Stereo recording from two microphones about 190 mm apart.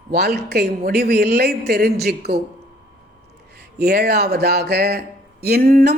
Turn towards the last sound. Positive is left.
turn(degrees=-50)  # may be behind; listen again after turning